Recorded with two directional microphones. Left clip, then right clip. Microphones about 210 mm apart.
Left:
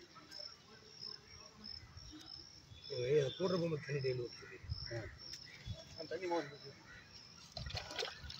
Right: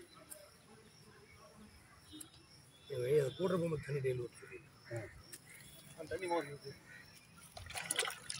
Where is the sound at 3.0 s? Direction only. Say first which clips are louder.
Right 1 dB; 5° right (ahead or behind).